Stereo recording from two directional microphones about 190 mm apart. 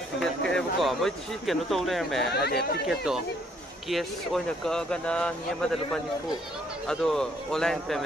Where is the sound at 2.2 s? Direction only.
60° left (ahead or behind).